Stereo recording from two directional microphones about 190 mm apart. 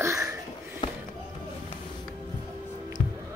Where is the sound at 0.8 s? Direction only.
25° left (ahead or behind).